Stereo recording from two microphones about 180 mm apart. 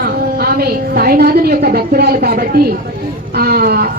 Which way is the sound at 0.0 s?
60° right (ahead or behind).